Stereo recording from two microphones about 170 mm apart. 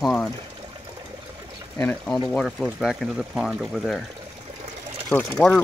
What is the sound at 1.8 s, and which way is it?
Speech, 5° left (ahead or behind).